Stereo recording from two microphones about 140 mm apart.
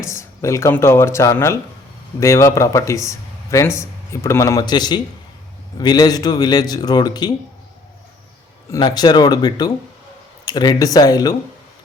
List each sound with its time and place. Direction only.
0.0 s a man's voice: 20° left (ahead or behind)
8.7 s a man's voice: 30° left (ahead or behind)